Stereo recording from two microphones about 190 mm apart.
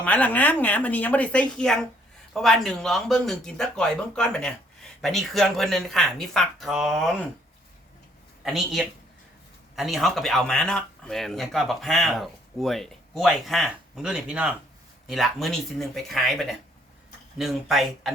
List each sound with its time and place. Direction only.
0.0 s a woman's voice: 10° left (ahead or behind)
8.4 s speech: centre (ahead or behind)